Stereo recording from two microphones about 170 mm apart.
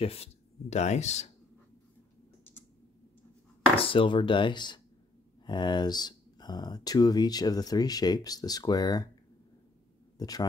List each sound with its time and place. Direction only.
0.0 s speech: 35° left (ahead or behind)
3.7 s speech: 30° left (ahead or behind)
10.1 s speech: 20° left (ahead or behind)